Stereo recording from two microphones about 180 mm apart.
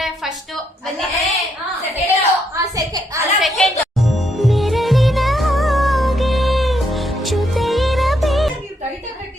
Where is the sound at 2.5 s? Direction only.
20° right (ahead or behind).